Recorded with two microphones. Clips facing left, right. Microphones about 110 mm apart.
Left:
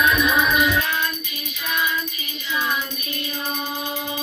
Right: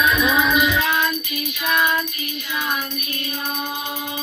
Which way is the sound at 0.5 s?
10° right (ahead or behind).